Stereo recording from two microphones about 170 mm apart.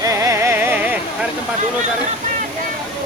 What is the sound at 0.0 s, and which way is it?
Music, 15° right (ahead or behind).